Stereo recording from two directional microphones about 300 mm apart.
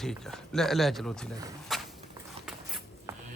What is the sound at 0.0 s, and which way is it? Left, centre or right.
Speech, centre.